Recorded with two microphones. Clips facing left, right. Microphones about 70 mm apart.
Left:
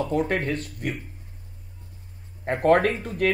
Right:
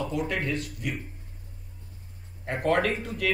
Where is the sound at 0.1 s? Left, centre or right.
Left.